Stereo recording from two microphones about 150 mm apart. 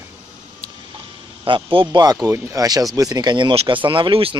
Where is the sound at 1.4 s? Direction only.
35° right (ahead or behind).